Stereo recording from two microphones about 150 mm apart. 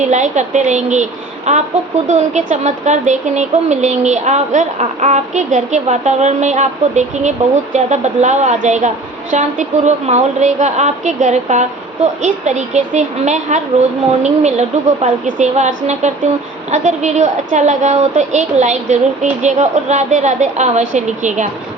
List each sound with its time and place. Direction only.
0.0 s speech: 50° right (ahead or behind)